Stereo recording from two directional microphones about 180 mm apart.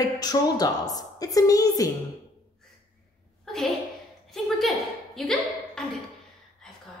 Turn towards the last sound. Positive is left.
turn(degrees=5)  # may be behind; listen again after turning